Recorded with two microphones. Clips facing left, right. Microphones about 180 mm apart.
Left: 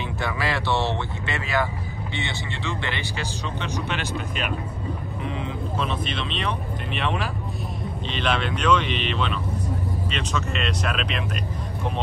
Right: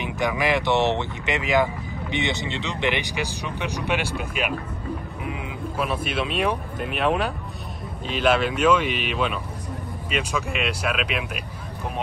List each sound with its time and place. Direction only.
0.0 s speech: 15° right (ahead or behind)
5.8 s speech: 10° right (ahead or behind)